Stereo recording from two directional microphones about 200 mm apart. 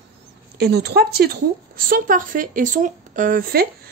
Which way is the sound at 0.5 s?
55° right (ahead or behind).